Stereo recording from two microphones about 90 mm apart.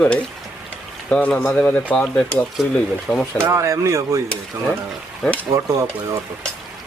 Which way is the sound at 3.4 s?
30° right (ahead or behind).